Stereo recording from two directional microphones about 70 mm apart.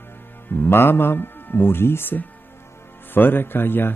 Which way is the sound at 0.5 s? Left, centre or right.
Left.